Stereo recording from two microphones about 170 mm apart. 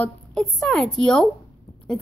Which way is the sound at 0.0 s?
Centre (ahead or behind).